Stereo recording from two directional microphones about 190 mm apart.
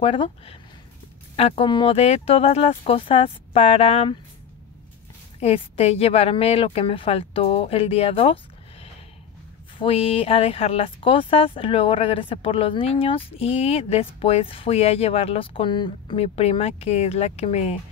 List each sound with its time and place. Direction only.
0.0 s speech: 30° left (ahead or behind)
5.4 s speech: 30° left (ahead or behind)
9.8 s speech: 30° left (ahead or behind)